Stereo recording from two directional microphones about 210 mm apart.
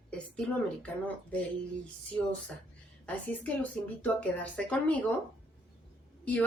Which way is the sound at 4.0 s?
5° left (ahead or behind).